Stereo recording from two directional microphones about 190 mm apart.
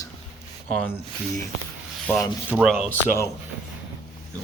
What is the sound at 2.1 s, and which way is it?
Speech, 10° left (ahead or behind).